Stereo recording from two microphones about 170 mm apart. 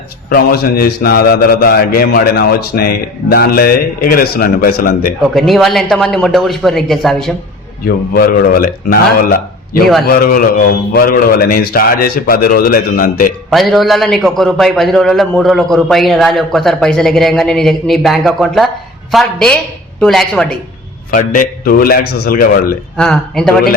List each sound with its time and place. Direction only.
0.3 s a man's voice: 65° left (ahead or behind)
5.3 s a man's voice: centre (ahead or behind)
7.9 s a man's voice: 60° left (ahead or behind)
13.5 s a man's voice: centre (ahead or behind)
21.1 s a man's voice: 55° left (ahead or behind)
23.0 s a man's voice: 5° left (ahead or behind)